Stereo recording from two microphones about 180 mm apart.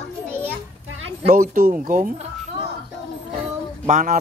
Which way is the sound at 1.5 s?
45° right (ahead or behind).